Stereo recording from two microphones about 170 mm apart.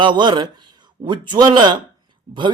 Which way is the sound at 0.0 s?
25° right (ahead or behind).